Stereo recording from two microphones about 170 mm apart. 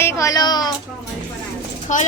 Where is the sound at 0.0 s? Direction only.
15° left (ahead or behind).